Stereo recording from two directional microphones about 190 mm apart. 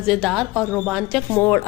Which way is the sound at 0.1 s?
Centre (ahead or behind).